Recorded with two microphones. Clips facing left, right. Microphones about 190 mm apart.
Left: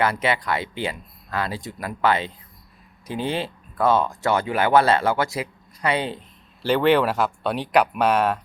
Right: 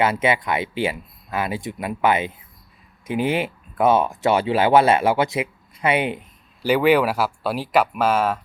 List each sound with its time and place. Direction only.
0.0 s speech: 25° right (ahead or behind)
3.8 s speech: 20° right (ahead or behind); by 8.4 s centre (ahead or behind)